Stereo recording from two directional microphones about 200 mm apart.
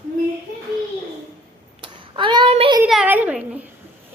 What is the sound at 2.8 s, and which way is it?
Speech, 5° right (ahead or behind).